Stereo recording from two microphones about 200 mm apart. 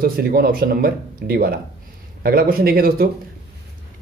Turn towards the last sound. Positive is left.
turn(degrees=-50)  # may be behind; listen again after turning